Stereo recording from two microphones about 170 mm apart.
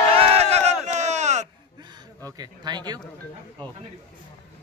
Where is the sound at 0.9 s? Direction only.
40° right (ahead or behind).